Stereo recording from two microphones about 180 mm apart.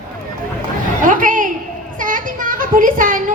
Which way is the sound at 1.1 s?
50° right (ahead or behind).